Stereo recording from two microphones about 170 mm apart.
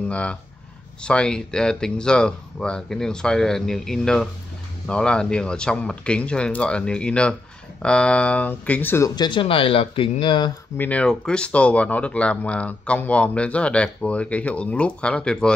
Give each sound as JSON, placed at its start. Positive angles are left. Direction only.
{"t": 0.1, "sound": "speech", "side_deg": 5}
{"t": 10.8, "sound": "speech", "side_deg": 10}